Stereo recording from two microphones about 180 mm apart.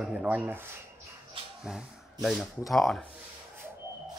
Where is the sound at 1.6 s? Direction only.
Centre (ahead or behind).